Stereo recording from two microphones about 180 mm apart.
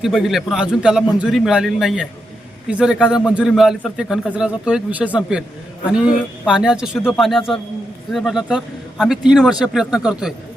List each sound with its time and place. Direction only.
0.0 s a man's voice: centre (ahead or behind)